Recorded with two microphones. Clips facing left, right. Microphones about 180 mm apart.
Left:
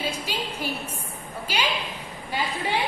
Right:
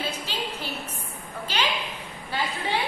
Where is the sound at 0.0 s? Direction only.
10° left (ahead or behind).